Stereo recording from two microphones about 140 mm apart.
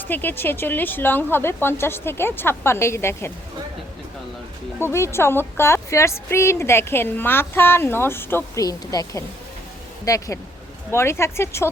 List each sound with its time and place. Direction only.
0.1 s a woman's voice: 15° left (ahead or behind)
4.8 s a woman's voice: 20° left (ahead or behind)